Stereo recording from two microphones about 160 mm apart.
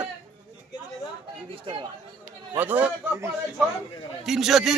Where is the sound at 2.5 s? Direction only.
10° right (ahead or behind).